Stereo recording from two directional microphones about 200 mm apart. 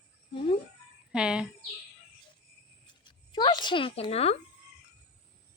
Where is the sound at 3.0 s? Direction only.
25° left (ahead or behind).